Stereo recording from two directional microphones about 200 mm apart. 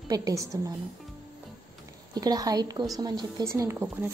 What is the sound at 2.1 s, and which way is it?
Speech, 20° right (ahead or behind).